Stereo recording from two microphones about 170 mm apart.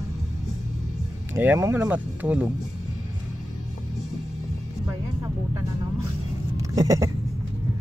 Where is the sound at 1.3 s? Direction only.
15° right (ahead or behind).